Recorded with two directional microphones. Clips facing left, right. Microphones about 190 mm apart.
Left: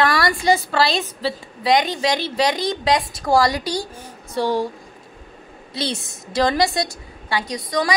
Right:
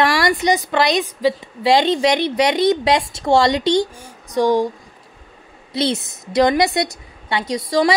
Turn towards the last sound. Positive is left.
turn(degrees=-25)  # may be behind; listen again after turning